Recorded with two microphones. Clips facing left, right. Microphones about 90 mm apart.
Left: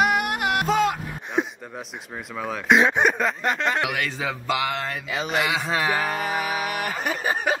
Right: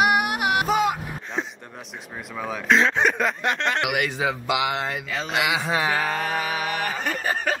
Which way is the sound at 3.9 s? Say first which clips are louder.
Right 3 dB; 10° right (ahead or behind).